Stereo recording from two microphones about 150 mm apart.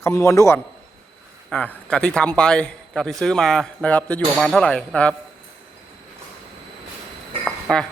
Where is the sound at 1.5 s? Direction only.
5° left (ahead or behind).